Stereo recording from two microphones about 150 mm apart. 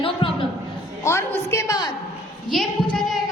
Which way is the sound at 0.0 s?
35° left (ahead or behind).